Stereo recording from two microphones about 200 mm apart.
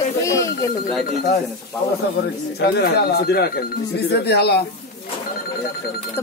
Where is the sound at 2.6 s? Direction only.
55° left (ahead or behind).